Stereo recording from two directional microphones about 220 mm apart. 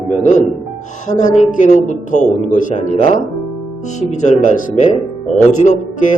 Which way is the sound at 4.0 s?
35° left (ahead or behind).